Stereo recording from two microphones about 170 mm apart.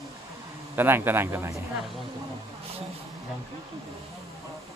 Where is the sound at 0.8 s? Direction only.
10° right (ahead or behind).